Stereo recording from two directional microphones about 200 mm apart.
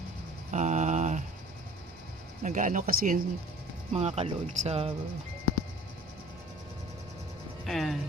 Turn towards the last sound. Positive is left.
turn(degrees=0)  # may be behind; listen again after turning